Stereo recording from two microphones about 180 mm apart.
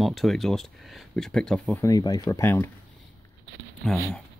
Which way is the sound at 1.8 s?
20° left (ahead or behind).